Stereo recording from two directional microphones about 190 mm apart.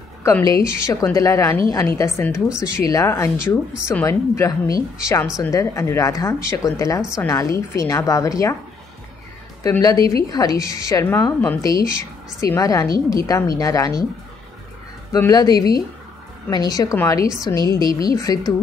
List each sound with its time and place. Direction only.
0.2 s a woman's voice: 15° left (ahead or behind)
9.6 s a woman's voice: 20° left (ahead or behind)
15.1 s speech: 15° left (ahead or behind)